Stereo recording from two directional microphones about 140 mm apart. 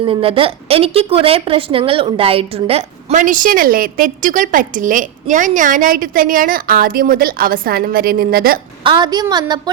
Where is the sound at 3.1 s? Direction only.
70° right (ahead or behind); by 8.6 s 90° right.